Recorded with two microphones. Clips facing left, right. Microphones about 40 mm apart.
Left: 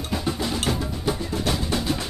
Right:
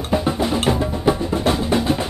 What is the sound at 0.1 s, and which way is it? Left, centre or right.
Music, right.